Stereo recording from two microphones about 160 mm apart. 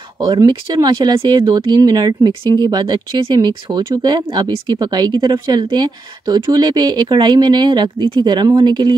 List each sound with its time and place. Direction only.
0.2 s speech: 25° right (ahead or behind)